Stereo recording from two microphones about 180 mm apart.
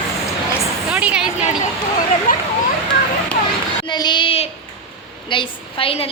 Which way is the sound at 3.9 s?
25° left (ahead or behind).